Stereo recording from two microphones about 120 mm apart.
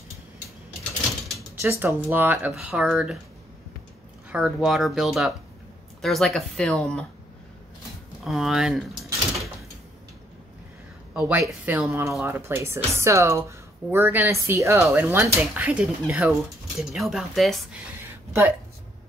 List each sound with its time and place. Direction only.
1.6 s speech: 20° right (ahead or behind)
4.3 s speech: 5° right (ahead or behind)
8.2 s speech: centre (ahead or behind)
11.1 s speech: 10° right (ahead or behind)
12.0 s speech: 25° right (ahead or behind); by 17.6 s centre (ahead or behind)
18.0 s a sound: 20° right (ahead or behind)